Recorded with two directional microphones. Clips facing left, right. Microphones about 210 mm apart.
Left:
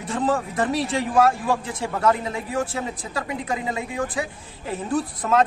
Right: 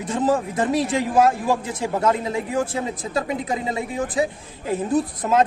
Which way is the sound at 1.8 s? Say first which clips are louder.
Right 1 dB; 25° right (ahead or behind).